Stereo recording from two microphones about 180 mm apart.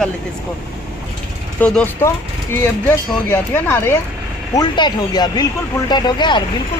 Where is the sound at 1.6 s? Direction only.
10° left (ahead or behind).